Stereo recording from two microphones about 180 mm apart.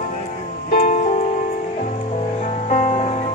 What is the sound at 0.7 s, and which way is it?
Music, 55° left (ahead or behind).